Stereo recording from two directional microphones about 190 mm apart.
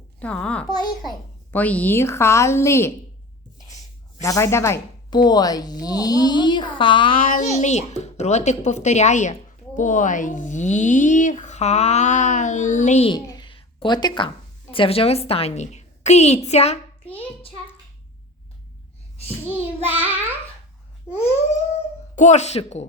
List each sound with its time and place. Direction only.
0.2 s a child's voice: 5° left (ahead or behind)
4.2 s speech: 15° left (ahead or behind)
7.2 s speech: 45° left (ahead or behind)
13.1 s a sound: 20° left (ahead or behind)
14.7 s speech: 30° left (ahead or behind)
19.5 s child singing: 10° right (ahead or behind)
21.1 s a sound: 5° right (ahead or behind)
22.1 s speech: 40° left (ahead or behind)